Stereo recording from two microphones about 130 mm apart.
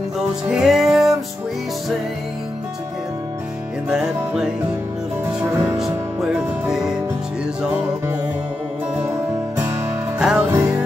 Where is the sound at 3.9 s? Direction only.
5° right (ahead or behind).